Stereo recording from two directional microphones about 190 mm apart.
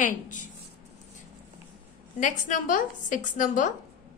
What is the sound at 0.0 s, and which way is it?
Speech, 40° left (ahead or behind).